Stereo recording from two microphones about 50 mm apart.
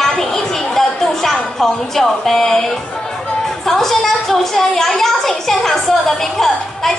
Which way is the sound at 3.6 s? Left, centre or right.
Centre.